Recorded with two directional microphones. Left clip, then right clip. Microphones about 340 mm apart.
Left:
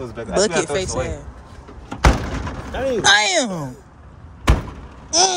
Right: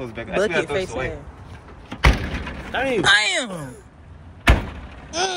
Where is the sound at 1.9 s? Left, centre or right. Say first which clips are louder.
Left 2 dB; centre.